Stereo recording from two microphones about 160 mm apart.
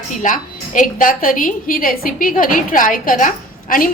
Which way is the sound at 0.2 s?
55° left (ahead or behind).